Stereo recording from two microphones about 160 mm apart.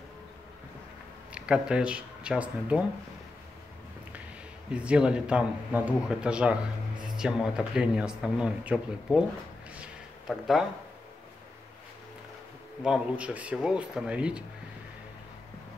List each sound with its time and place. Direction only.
1.3 s speech: 5° right (ahead or behind)
4.6 s speech: 5° right (ahead or behind)
9.8 s a sound: centre (ahead or behind)
12.8 s speech: 5° right (ahead or behind)